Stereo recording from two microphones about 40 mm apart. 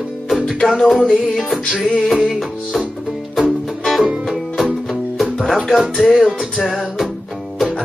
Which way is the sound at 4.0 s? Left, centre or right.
Centre.